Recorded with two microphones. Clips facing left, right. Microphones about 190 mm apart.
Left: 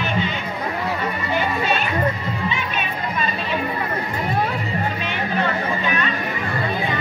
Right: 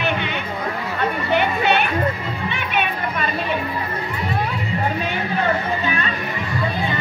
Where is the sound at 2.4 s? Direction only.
60° right (ahead or behind).